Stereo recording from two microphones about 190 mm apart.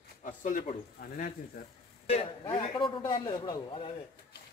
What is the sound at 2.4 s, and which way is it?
A man's voice, 25° left (ahead or behind).